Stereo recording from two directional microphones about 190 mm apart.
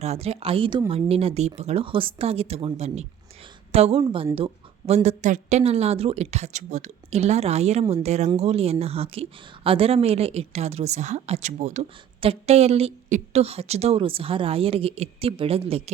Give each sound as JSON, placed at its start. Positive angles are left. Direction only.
{"t": 0.0, "sound": "a woman's voice", "side_deg": -35}
{"t": 4.4, "sound": "a sound", "side_deg": -30}
{"t": 5.0, "sound": "a woman's voice", "side_deg": -40}